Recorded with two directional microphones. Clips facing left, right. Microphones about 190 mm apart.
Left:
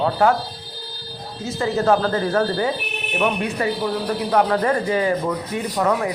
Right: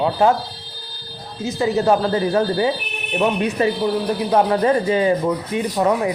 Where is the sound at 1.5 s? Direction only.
15° right (ahead or behind).